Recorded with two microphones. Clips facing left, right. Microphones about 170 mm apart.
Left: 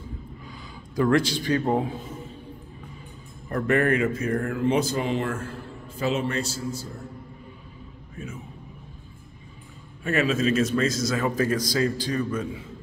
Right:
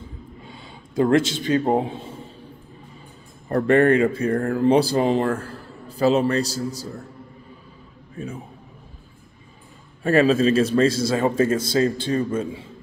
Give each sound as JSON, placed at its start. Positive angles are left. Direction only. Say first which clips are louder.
{"t": 0.5, "sound": "a man's voice", "louder": "even", "side_deg": -25}
{"t": 3.4, "sound": "speech", "louder": "right 6 dB", "side_deg": -35}
{"t": 8.2, "sound": "speech", "louder": "right 5 dB", "side_deg": -30}
{"t": 10.0, "sound": "a man's voice", "louder": "right 6 dB", "side_deg": -35}